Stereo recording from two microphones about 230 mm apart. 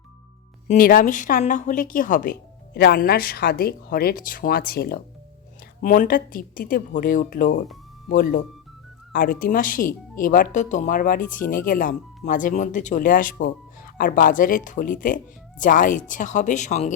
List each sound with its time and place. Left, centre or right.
0.7 s speech: left